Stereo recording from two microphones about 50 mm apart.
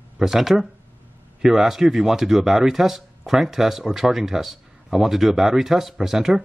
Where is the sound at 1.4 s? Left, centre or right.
Centre.